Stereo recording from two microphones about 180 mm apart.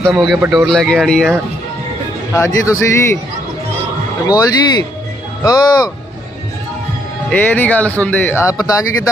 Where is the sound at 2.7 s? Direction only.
15° left (ahead or behind).